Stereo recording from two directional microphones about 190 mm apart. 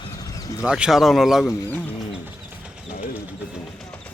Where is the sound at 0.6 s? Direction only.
5° right (ahead or behind).